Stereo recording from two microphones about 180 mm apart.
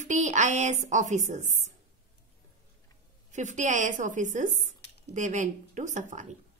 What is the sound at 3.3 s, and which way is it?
A woman's voice, 40° right (ahead or behind).